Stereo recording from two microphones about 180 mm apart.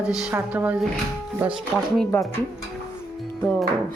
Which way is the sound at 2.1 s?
10° left (ahead or behind).